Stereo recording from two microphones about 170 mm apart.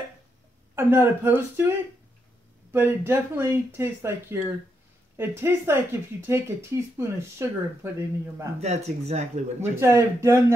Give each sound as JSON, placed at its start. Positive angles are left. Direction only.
{"t": 0.7, "sound": "speech", "side_deg": -15}
{"t": 8.5, "sound": "speech", "side_deg": -40}
{"t": 9.8, "sound": "speech", "side_deg": -15}